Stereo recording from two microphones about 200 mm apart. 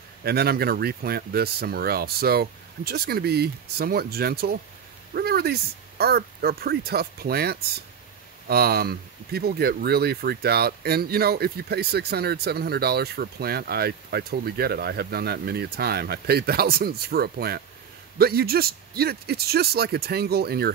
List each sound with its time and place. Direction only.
0.2 s speech: 50° right (ahead or behind)